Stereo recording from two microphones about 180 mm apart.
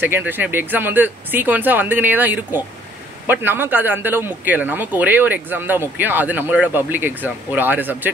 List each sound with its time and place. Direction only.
0.0 s speech: 10° right (ahead or behind)